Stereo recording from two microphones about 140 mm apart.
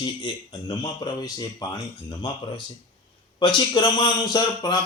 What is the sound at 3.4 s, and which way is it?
A man's voice, 35° left (ahead or behind).